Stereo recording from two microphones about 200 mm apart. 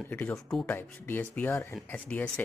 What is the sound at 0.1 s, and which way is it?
Speech, 10° left (ahead or behind).